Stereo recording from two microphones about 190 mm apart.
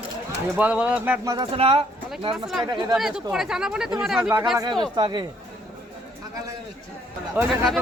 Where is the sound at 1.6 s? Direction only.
30° right (ahead or behind).